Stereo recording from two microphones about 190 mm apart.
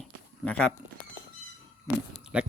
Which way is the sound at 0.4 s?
5° left (ahead or behind).